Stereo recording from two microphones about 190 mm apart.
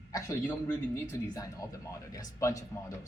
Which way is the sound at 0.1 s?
15° left (ahead or behind).